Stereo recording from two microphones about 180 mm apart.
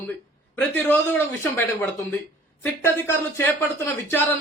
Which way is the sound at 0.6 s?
10° left (ahead or behind).